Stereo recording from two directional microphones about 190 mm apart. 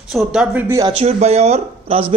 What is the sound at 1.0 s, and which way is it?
Speech, 35° right (ahead or behind).